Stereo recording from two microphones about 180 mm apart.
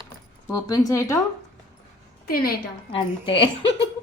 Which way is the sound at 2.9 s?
30° left (ahead or behind).